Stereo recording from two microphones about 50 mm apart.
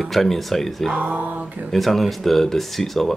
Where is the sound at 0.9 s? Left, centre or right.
Right.